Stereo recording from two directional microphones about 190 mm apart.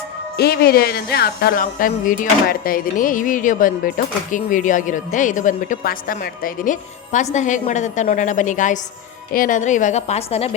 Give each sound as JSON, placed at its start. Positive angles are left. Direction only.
{"t": 0.3, "sound": "a woman's voice", "side_deg": 55}